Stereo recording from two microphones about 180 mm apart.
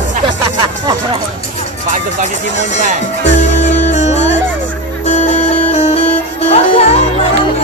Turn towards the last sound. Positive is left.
turn(degrees=35)  # may be behind; listen again after turning